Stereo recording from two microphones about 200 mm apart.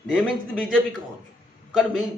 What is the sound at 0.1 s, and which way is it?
A man's voice, centre (ahead or behind).